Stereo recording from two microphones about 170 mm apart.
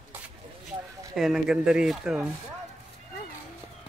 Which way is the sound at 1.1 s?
Centre (ahead or behind).